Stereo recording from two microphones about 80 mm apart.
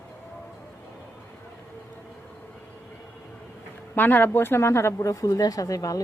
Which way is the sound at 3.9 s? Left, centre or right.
Left.